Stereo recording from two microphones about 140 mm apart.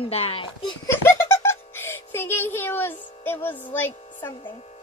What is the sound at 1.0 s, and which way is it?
Music, 20° left (ahead or behind).